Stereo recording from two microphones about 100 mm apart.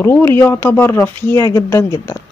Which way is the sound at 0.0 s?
25° left (ahead or behind).